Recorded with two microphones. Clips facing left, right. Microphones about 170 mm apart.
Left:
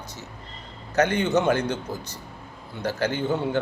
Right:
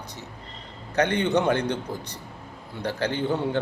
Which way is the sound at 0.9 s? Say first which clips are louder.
Left 1 dB; 30° right (ahead or behind).